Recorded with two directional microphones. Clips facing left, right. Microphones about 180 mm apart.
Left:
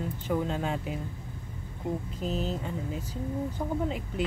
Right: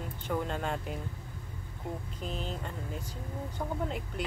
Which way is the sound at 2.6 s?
5° left (ahead or behind).